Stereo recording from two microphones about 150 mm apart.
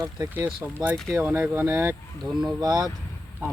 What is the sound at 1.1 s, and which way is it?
Speech, 15° right (ahead or behind).